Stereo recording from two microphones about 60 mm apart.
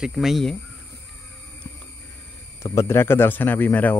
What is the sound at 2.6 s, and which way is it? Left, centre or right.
Speech, left.